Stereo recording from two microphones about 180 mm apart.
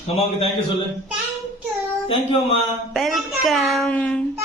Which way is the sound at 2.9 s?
Centre (ahead or behind).